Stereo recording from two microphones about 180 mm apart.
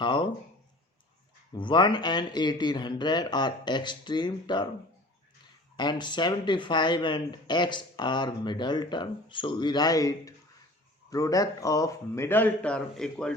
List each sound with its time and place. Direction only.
0.0 s speech: 25° left (ahead or behind)
1.5 s speech: 25° left (ahead or behind)
5.7 s speech: 25° left (ahead or behind); by 13.3 s 5° left (ahead or behind)